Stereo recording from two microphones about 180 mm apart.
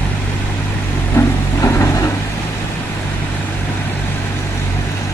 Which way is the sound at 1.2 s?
15° left (ahead or behind).